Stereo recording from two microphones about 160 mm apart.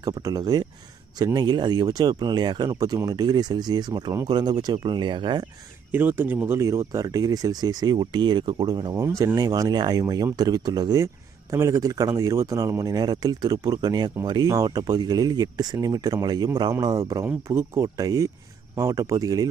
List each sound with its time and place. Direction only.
0.0 s speech: 25° right (ahead or behind)
5.9 s speech: 10° right (ahead or behind)